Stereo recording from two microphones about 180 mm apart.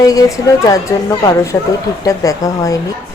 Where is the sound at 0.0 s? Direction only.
20° left (ahead or behind).